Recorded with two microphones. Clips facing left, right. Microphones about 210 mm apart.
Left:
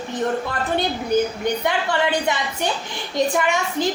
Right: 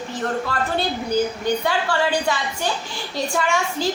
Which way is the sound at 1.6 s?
20° left (ahead or behind).